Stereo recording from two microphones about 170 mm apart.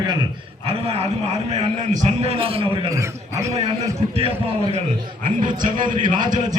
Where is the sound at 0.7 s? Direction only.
35° right (ahead or behind).